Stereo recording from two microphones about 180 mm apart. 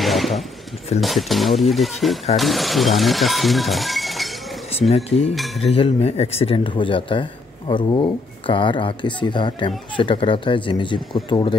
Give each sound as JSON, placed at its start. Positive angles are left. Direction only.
{"t": 0.0, "sound": "a sound", "side_deg": 0}
{"t": 1.0, "sound": "speech", "side_deg": 0}
{"t": 4.9, "sound": "cutlery", "side_deg": 35}
{"t": 5.3, "sound": "speech", "side_deg": 0}
{"t": 5.7, "sound": "speech", "side_deg": 35}